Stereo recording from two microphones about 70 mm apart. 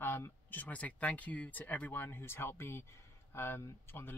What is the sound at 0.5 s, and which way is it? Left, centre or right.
Speech, left.